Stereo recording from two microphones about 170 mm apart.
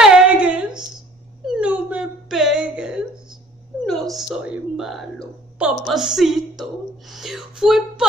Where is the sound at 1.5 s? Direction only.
5° right (ahead or behind).